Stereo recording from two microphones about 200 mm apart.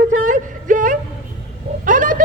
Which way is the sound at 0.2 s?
40° right (ahead or behind).